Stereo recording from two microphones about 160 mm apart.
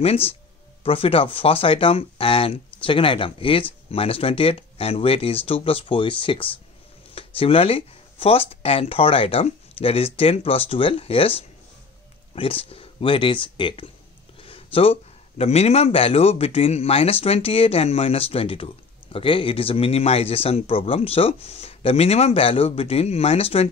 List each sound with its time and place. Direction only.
0.0 s speech: 35° left (ahead or behind)